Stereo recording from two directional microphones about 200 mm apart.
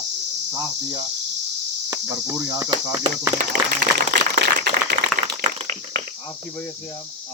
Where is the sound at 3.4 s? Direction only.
40° right (ahead or behind).